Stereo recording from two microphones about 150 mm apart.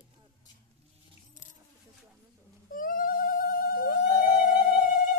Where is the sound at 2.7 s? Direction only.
70° left (ahead or behind).